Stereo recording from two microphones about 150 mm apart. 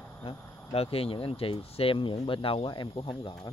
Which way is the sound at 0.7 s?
40° left (ahead or behind).